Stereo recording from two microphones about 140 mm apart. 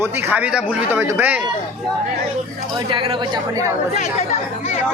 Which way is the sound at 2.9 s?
35° right (ahead or behind).